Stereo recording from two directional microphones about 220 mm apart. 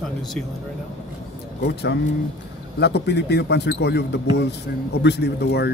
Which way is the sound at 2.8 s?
50° left (ahead or behind).